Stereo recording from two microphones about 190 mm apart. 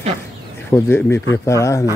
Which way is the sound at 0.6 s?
10° left (ahead or behind).